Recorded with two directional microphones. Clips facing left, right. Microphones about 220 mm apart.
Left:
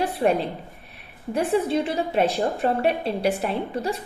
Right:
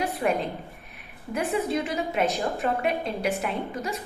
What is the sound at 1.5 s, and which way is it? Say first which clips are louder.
A woman's voice: left 4 dB; 30° left (ahead or behind).